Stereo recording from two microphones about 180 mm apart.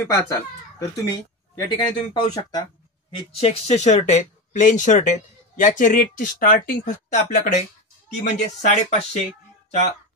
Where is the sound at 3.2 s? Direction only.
35° left (ahead or behind).